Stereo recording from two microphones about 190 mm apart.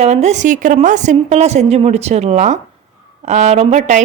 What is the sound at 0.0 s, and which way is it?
Speech, 35° right (ahead or behind).